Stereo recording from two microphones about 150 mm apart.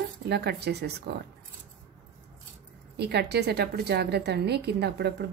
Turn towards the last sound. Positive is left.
turn(degrees=-90)